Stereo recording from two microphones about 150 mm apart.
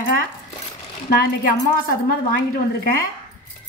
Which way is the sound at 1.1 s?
80° left.